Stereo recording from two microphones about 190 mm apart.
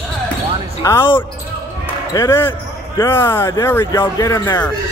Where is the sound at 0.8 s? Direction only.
15° left (ahead or behind).